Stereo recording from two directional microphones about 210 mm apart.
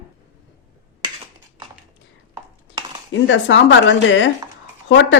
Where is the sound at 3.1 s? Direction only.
60° left (ahead or behind).